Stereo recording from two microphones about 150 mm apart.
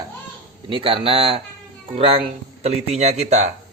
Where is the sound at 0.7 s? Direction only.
35° right (ahead or behind).